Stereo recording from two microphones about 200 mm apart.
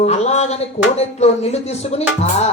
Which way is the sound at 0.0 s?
35° left (ahead or behind).